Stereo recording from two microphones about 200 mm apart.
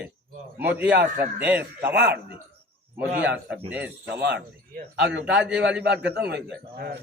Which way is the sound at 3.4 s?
5° right (ahead or behind).